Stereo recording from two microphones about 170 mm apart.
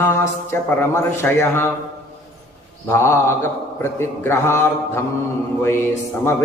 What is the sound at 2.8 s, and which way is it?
A man's voice, 15° left (ahead or behind).